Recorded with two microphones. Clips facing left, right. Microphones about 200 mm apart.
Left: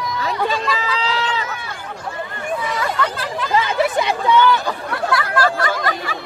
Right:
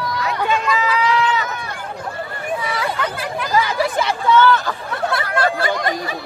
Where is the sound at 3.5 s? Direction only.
25° left (ahead or behind).